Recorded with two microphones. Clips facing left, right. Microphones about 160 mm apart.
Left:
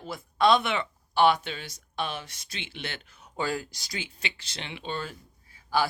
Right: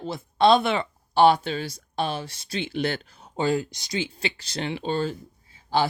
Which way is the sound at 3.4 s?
25° right (ahead or behind).